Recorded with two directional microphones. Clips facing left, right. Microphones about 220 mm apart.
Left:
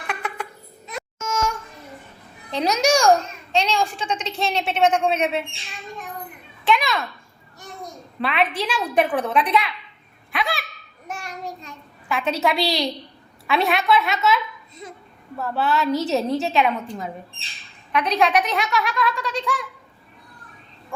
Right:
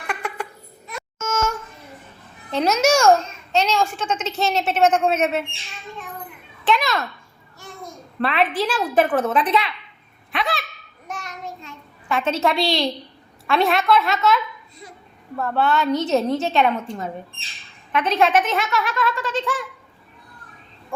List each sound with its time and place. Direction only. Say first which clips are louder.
0.1 s babbling: right 2 dB; 10° right (ahead or behind)
1.2 s a sound: right 2 dB; 5° right (ahead or behind)
2.5 s a woman's voice: right 2 dB; centre (ahead or behind)
6.7 s a child's voice: even; centre (ahead or behind)
8.2 s a woman's voice: right 2 dB; centre (ahead or behind)
10.3 s a sound: right 1 dB; centre (ahead or behind)
12.0 s a woman's voice: right 1 dB; centre (ahead or behind)